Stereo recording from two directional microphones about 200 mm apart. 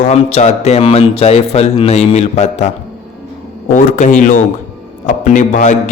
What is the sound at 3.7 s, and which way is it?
Speech, 40° left (ahead or behind).